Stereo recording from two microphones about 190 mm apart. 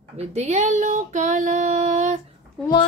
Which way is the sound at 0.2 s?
35° right (ahead or behind).